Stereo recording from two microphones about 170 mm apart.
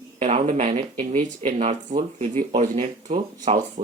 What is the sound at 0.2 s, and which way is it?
Speech, 40° right (ahead or behind).